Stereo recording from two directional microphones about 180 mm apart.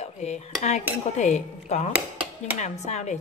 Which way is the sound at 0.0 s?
40° left (ahead or behind).